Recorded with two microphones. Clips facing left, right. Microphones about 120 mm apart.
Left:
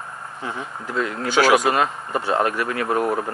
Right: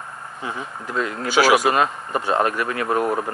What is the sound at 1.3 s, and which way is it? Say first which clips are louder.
Speech: even; 5° right (ahead or behind).